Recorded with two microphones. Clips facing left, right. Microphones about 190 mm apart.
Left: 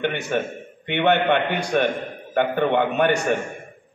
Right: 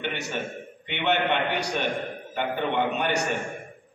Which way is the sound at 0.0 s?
55° left (ahead or behind).